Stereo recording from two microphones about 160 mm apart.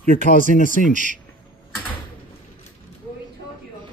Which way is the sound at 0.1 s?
60° left (ahead or behind).